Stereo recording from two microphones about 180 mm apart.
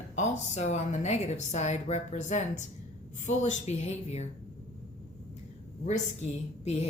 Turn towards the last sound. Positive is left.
turn(degrees=35)  # may be behind; listen again after turning